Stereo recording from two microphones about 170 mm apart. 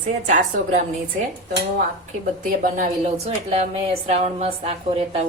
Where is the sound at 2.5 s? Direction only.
50° right (ahead or behind).